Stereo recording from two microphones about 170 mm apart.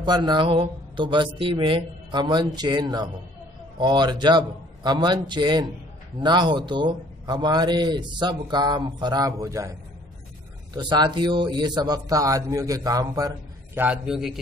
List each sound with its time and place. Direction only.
0.0 s a man's voice: 25° right (ahead or behind)
13.7 s a man's voice: 5° right (ahead or behind)